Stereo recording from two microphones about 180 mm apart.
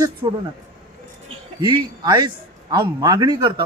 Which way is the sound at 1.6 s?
25° right (ahead or behind).